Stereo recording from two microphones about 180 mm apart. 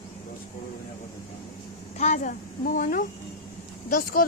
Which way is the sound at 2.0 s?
40° left (ahead or behind).